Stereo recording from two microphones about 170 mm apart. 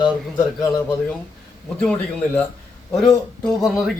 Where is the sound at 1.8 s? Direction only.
10° left (ahead or behind).